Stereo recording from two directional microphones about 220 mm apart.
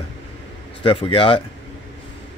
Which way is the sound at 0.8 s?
25° left (ahead or behind).